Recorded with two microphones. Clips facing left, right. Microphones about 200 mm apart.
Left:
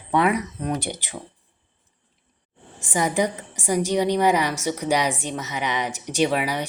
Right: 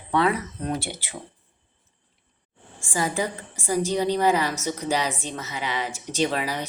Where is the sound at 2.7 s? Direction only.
20° left (ahead or behind).